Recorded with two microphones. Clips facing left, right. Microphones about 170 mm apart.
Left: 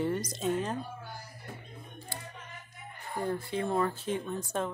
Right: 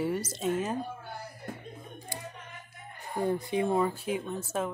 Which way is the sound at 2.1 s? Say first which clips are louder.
Right 3 dB; 15° right (ahead or behind).